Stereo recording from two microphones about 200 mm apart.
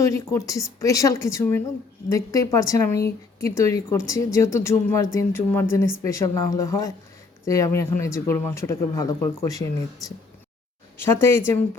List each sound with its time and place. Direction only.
0.0 s speech: 15° left (ahead or behind)
10.9 s speech: 10° left (ahead or behind)